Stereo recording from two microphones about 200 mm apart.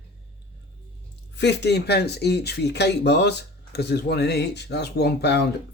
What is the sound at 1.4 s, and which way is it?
Speech, 60° left (ahead or behind).